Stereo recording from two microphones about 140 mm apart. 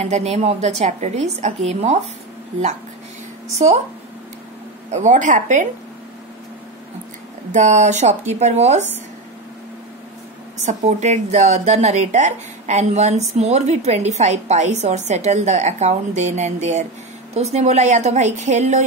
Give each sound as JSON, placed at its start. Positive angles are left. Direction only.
{"t": 0.0, "sound": "speech", "side_deg": -55}
{"t": 4.9, "sound": "a woman's voice", "side_deg": -60}
{"t": 7.5, "sound": "a woman's voice", "side_deg": -60}
{"t": 10.6, "sound": "a woman's voice", "side_deg": -55}